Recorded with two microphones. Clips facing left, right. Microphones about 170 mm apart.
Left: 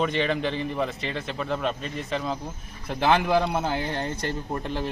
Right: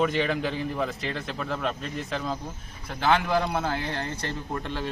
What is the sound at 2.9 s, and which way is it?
A man's voice, 15° left (ahead or behind).